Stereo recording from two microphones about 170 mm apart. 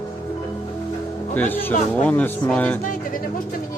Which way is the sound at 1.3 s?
10° left (ahead or behind).